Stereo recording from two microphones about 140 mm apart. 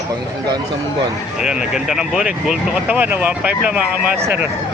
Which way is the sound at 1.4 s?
5° right (ahead or behind).